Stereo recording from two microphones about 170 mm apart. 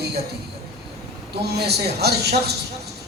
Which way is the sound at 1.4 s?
70° right (ahead or behind).